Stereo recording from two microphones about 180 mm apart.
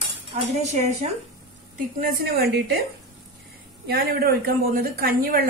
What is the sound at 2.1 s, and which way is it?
Speech, 60° right (ahead or behind).